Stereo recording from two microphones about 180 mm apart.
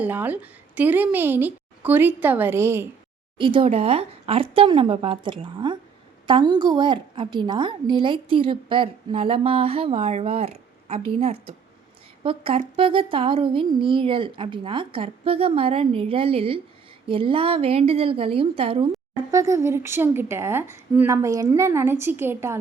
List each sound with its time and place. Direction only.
0.0 s a woman's voice: 10° right (ahead or behind)
3.3 s a woman's voice: 30° right (ahead or behind)
19.3 s a woman's voice: 15° right (ahead or behind)